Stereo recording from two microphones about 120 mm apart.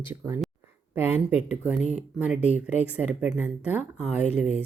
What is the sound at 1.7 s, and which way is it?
Speech, 10° right (ahead or behind).